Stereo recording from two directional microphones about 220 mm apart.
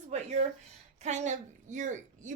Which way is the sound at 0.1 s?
30° right (ahead or behind).